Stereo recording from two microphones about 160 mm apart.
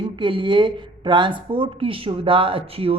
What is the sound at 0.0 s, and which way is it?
A woman's voice, 30° right (ahead or behind).